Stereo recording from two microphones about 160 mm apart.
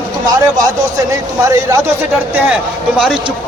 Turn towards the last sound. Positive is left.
turn(degrees=-5)  # may be behind; listen again after turning